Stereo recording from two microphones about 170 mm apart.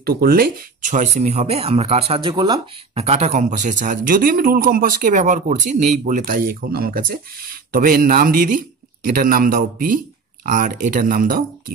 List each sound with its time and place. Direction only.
0.0 s speech: 65° right (ahead or behind); by 2.6 s 25° right (ahead or behind)
2.9 s a man's voice: 35° right (ahead or behind); by 11.4 s 55° right (ahead or behind)